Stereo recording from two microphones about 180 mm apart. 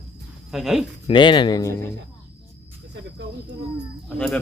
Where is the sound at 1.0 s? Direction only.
25° left (ahead or behind).